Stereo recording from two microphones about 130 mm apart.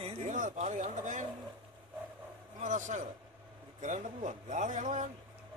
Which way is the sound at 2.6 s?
70° right (ahead or behind).